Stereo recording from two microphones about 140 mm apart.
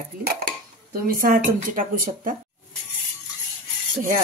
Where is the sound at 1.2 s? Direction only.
75° right (ahead or behind).